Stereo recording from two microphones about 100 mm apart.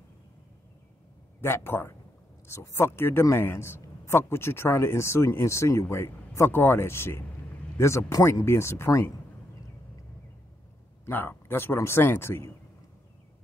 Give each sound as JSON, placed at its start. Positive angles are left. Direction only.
{"t": 1.4, "sound": "a man's voice", "side_deg": 25}
{"t": 11.1, "sound": "a man's voice", "side_deg": 20}